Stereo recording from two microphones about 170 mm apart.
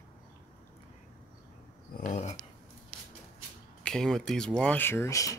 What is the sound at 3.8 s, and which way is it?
Speech, 5° left (ahead or behind).